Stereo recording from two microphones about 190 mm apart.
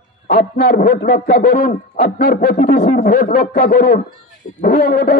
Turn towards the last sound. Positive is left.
turn(degrees=50)  # may be behind; listen again after turning